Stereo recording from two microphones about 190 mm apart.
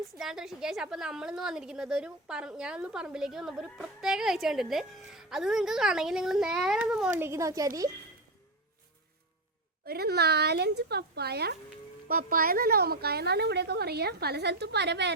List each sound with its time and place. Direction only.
0.2 s a woman's voice: centre (ahead or behind)
7.2 s speech: 15° right (ahead or behind)
9.8 s a woman's voice: 55° right (ahead or behind)